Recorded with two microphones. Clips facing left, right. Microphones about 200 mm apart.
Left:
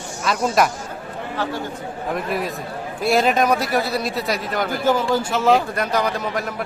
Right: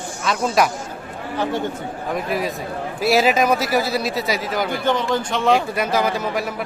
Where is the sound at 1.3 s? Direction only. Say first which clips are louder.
Right 3 dB; 15° right (ahead or behind).